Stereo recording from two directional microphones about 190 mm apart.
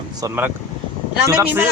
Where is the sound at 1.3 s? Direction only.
10° right (ahead or behind).